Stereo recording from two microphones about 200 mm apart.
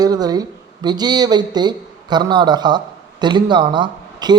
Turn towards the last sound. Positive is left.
turn(degrees=-20)  # may be behind; listen again after turning